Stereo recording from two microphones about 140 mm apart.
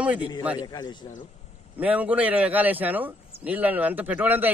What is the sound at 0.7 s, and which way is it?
Speech, 30° left (ahead or behind).